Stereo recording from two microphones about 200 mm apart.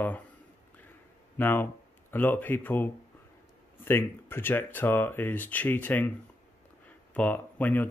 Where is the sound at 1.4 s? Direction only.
10° left (ahead or behind).